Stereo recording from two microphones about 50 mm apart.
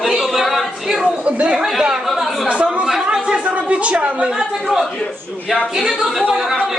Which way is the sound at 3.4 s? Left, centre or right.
Right.